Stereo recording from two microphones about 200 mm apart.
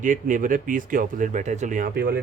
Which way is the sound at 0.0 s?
40° right (ahead or behind).